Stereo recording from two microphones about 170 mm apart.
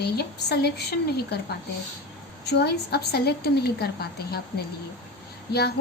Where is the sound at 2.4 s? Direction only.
70° left (ahead or behind).